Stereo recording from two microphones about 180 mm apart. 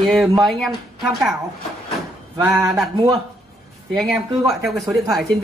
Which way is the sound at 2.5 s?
Centre (ahead or behind).